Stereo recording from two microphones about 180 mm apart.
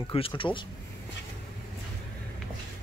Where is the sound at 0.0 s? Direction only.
30° left (ahead or behind).